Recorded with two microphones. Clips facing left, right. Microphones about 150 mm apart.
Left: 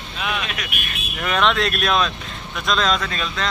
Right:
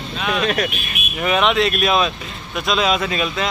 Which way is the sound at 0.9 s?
5° right (ahead or behind).